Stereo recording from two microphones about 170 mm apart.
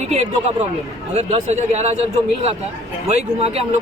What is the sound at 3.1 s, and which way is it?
Speech, 40° right (ahead or behind).